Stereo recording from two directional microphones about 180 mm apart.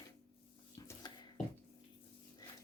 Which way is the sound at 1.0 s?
25° left (ahead or behind).